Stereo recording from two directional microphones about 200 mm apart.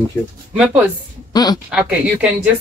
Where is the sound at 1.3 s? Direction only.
20° left (ahead or behind).